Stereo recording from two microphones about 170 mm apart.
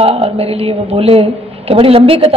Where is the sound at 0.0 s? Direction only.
35° right (ahead or behind).